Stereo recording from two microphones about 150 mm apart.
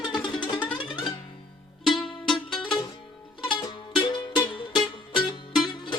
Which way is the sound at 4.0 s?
30° left (ahead or behind).